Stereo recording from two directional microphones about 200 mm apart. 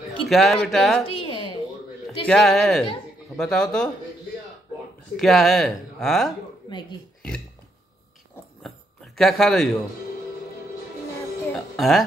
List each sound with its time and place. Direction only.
0.3 s speech: centre (ahead or behind)
1.0 s a sound: 25° left (ahead or behind)
2.2 s speech: centre (ahead or behind)
5.1 s speech: centre (ahead or behind)
8.6 s a sound: centre (ahead or behind)
11.5 s music: centre (ahead or behind)